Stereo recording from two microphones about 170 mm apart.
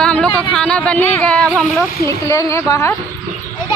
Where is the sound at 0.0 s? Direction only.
5° left (ahead or behind).